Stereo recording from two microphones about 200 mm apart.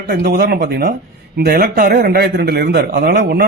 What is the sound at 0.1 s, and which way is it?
Speech, 50° right (ahead or behind).